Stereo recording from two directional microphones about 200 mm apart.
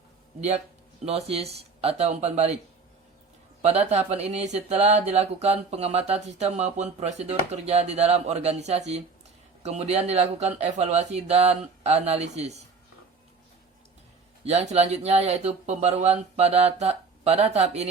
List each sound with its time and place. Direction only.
1.0 s speech: 30° right (ahead or behind)
3.6 s speech: 30° right (ahead or behind)
14.4 s speech: 35° right (ahead or behind)